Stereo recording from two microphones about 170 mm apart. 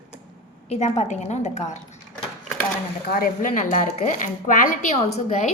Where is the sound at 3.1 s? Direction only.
55° left (ahead or behind).